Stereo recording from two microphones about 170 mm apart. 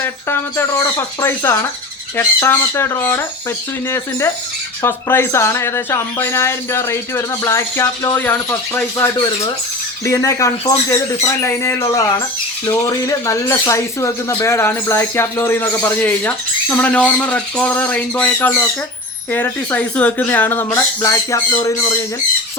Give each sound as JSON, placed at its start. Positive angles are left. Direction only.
{"t": 0.0, "sound": "speech", "side_deg": 15}